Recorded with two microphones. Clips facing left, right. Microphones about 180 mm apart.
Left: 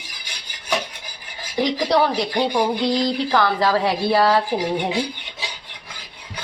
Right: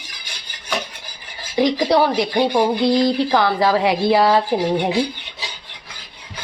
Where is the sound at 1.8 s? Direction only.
10° right (ahead or behind).